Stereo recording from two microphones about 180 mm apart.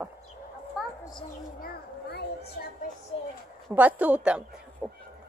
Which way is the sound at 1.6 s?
65° left (ahead or behind).